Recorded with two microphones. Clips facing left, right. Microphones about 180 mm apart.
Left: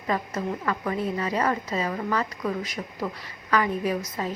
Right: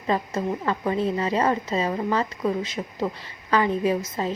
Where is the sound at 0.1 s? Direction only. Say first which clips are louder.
Right 3 dB; 25° right (ahead or behind).